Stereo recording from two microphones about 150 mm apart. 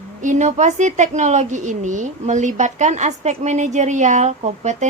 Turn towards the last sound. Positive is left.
turn(degrees=-50)  # may be behind; listen again after turning